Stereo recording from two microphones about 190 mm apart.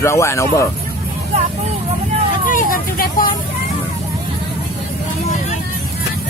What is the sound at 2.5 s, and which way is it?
Vehicle, 45° left (ahead or behind).